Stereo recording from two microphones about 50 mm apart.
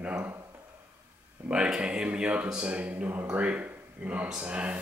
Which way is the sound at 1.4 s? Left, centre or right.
Right.